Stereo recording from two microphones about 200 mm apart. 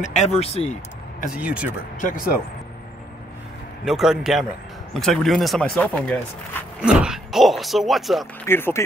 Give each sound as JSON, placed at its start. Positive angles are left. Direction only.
{"t": 0.0, "sound": "speech", "side_deg": 35}
{"t": 1.3, "sound": "speech", "side_deg": -5}
{"t": 2.0, "sound": "speech", "side_deg": 40}
{"t": 3.8, "sound": "speech", "side_deg": 0}
{"t": 8.5, "sound": "speech", "side_deg": 10}